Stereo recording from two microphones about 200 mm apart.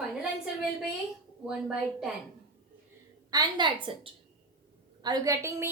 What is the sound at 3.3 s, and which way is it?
A woman's voice, 25° right (ahead or behind).